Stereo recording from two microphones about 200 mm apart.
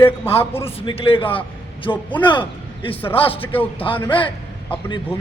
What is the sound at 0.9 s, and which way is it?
A man's voice, 25° left (ahead or behind).